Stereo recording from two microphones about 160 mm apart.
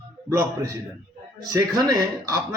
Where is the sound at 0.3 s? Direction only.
20° right (ahead or behind).